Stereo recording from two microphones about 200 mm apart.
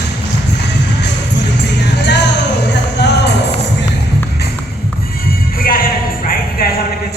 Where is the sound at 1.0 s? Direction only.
60° left (ahead or behind).